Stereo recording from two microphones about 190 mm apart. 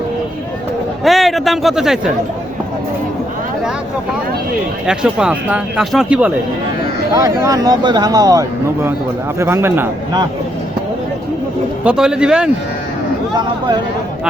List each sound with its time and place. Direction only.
1.0 s a man's voice: centre (ahead or behind)
4.9 s speech: 5° right (ahead or behind)
7.1 s speech: 15° right (ahead or behind)
11.9 s speech: 5° right (ahead or behind)